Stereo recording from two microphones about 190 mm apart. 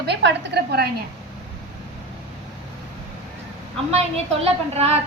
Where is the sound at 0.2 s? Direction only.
65° right (ahead or behind).